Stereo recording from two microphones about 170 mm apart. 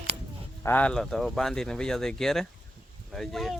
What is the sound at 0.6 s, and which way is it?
Speech, 10° left (ahead or behind).